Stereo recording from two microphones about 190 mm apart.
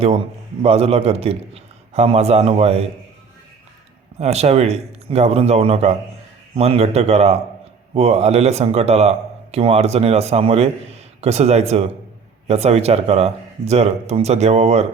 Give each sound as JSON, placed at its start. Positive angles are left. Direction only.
{"t": 0.6, "sound": "speech", "side_deg": -30}
{"t": 4.2, "sound": "speech", "side_deg": -35}